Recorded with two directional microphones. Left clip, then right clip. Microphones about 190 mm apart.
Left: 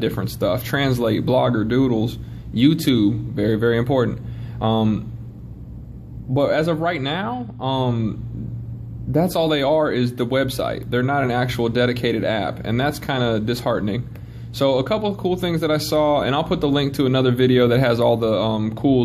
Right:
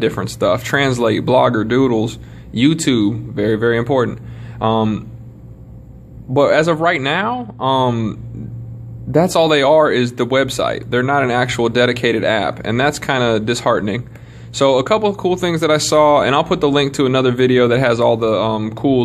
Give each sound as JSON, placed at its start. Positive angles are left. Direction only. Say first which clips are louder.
{"t": 0.0, "sound": "speech", "louder": "right 6 dB", "side_deg": -15}
{"t": 6.3, "sound": "speech", "louder": "right 6 dB", "side_deg": -20}